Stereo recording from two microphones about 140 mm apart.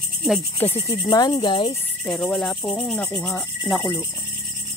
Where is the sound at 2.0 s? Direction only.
10° left (ahead or behind).